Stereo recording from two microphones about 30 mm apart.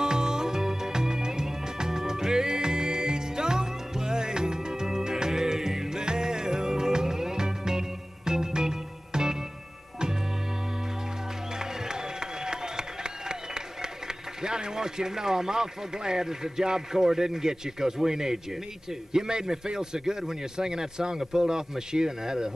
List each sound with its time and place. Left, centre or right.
0.0 s music: right
11.5 s music: right
19.2 s a man's voice: right